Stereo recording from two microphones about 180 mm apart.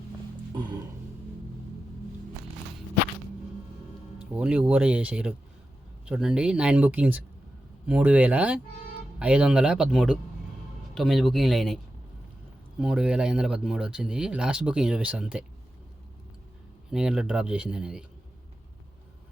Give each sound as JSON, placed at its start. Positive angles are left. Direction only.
{"t": 0.5, "sound": "music", "side_deg": -25}
{"t": 4.4, "sound": "speech", "side_deg": -5}
{"t": 12.8, "sound": "speech", "side_deg": -5}
{"t": 16.9, "sound": "speech", "side_deg": -5}